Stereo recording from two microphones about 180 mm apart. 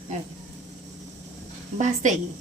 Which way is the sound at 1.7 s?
40° right (ahead or behind).